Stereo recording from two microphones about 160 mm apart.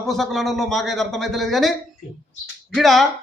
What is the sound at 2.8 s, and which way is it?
Speech, centre (ahead or behind).